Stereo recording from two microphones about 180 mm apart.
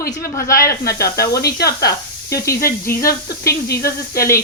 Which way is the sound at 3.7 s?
55° left (ahead or behind).